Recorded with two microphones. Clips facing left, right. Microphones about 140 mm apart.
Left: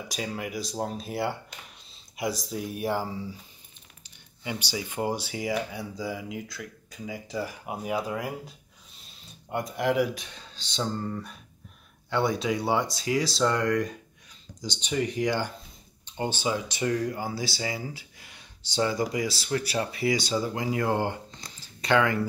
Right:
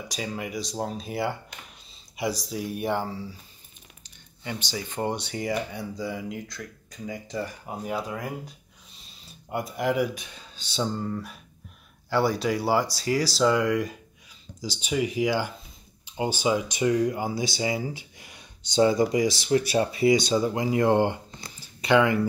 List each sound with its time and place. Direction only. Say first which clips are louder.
0.1 s speech: right 1 dB; centre (ahead or behind)
3.1 s speech: even; 15° left (ahead or behind)
4.4 s speech: even; 10° left (ahead or behind)
9.2 s speech: even; 5° right (ahead or behind); by 21.5 s 25° right (ahead or behind)
21.8 s speech: right 3 dB; 15° right (ahead or behind)